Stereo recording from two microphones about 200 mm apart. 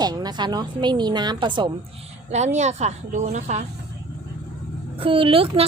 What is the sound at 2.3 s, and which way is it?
Speech, 35° right (ahead or behind).